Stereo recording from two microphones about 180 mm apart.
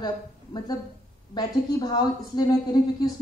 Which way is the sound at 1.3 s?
20° left (ahead or behind).